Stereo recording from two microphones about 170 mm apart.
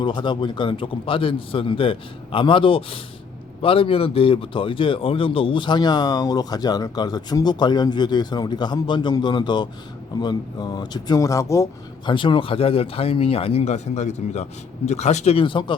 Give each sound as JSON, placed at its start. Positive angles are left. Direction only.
{"t": 0.0, "sound": "speech", "side_deg": 25}